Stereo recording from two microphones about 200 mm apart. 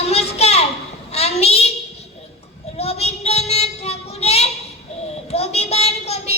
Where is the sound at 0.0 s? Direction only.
30° left (ahead or behind).